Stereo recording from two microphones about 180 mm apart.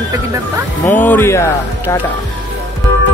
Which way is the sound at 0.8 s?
10° left (ahead or behind).